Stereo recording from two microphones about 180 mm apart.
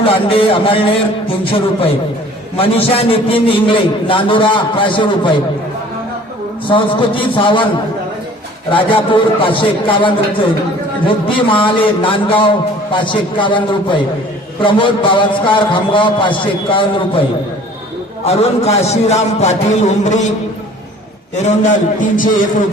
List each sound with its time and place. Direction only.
0.0 s a man's voice: 30° left (ahead or behind)
2.6 s a man's voice: 30° left (ahead or behind)
6.7 s a man's voice: 30° left (ahead or behind)
8.7 s a man's voice: 30° left (ahead or behind)
18.3 s a man's voice: 35° left (ahead or behind)
21.4 s a man's voice: 45° left (ahead or behind)